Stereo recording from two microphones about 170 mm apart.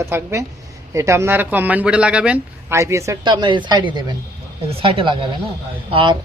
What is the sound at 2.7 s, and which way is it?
Speech, 15° right (ahead or behind).